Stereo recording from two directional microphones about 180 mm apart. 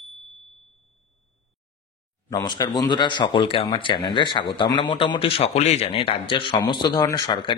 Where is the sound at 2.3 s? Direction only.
25° left (ahead or behind).